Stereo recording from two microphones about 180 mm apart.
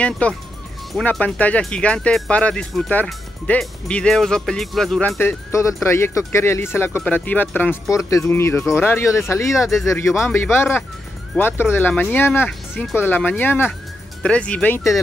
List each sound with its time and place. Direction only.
0.0 s speech: 5° left (ahead or behind)
5.2 s speech: 15° left (ahead or behind)